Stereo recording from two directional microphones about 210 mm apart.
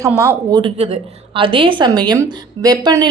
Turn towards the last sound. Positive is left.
turn(degrees=-20)  # may be behind; listen again after turning